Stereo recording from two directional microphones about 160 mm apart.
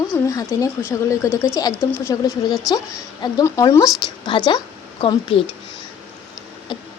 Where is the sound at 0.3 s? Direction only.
20° left (ahead or behind).